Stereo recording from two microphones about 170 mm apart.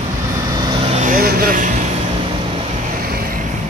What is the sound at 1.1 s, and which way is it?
Vehicle, 60° right (ahead or behind).